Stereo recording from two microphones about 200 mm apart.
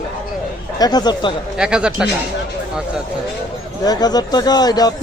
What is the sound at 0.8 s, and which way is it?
Speech, 20° left (ahead or behind).